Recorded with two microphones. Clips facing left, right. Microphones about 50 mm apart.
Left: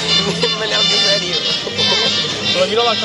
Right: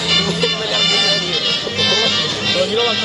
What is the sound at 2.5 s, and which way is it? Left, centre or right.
Speech, left.